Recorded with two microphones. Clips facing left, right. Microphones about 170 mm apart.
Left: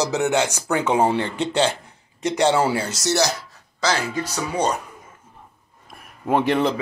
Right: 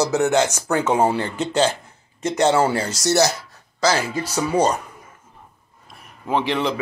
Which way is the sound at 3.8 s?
5° right (ahead or behind).